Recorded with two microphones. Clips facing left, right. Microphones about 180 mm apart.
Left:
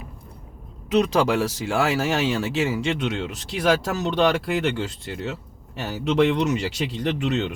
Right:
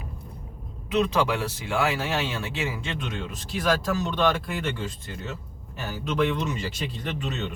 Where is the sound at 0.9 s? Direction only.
80° left.